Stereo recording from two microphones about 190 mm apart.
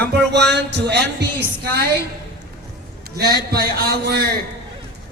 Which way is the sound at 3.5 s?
55° right (ahead or behind).